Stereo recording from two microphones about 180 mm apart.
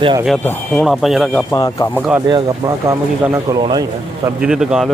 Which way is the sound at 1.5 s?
20° left (ahead or behind).